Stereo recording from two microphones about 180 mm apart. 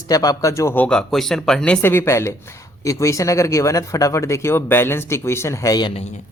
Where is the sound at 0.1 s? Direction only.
20° left (ahead or behind).